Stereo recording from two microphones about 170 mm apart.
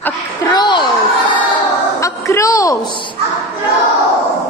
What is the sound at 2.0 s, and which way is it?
A woman's voice, 20° left (ahead or behind).